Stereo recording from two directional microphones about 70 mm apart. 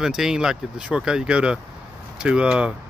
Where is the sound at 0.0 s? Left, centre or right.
Centre.